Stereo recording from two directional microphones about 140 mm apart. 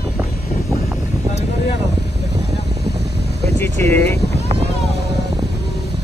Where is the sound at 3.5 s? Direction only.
20° left (ahead or behind).